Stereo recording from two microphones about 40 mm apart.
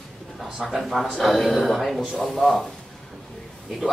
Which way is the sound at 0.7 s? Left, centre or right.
Centre.